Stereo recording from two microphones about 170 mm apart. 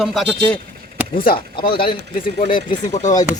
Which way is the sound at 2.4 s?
55° left (ahead or behind).